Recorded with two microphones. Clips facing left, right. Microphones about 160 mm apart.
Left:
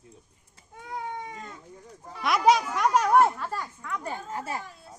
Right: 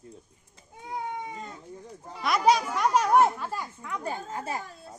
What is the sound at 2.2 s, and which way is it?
Speech, centre (ahead or behind).